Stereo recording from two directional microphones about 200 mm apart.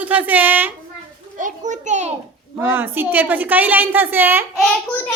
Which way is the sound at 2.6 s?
10° right (ahead or behind).